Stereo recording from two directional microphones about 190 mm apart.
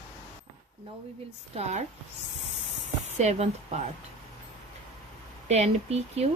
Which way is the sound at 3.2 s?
35° right (ahead or behind).